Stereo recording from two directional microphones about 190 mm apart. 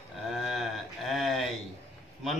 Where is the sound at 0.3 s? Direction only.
Centre (ahead or behind).